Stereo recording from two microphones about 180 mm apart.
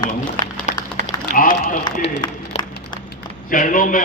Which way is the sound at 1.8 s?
25° left (ahead or behind).